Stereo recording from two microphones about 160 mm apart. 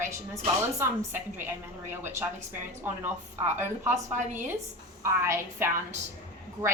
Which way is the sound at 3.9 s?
50° right (ahead or behind).